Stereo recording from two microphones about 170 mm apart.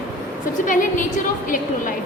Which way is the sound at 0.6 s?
50° left (ahead or behind).